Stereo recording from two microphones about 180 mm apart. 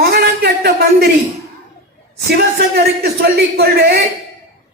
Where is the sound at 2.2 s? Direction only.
65° right (ahead or behind).